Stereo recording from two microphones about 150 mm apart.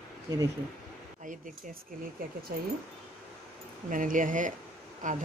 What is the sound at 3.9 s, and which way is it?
Speech, 60° right (ahead or behind).